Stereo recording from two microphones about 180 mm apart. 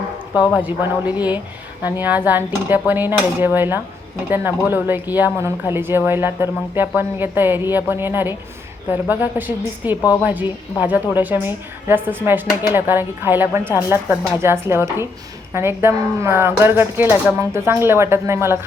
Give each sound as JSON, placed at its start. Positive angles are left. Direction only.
{"t": 0.5, "sound": "a woman's voice", "side_deg": -10}